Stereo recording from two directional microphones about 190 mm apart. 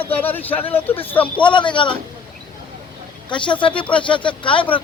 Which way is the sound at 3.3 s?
25° left (ahead or behind).